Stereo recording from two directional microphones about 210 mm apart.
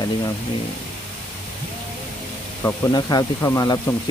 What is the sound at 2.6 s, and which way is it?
Speech, 15° left (ahead or behind).